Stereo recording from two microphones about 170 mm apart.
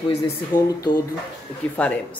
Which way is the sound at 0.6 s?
20° left (ahead or behind).